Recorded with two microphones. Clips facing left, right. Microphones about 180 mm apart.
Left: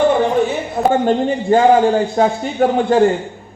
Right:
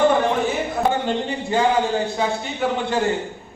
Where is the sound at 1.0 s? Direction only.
45° left (ahead or behind).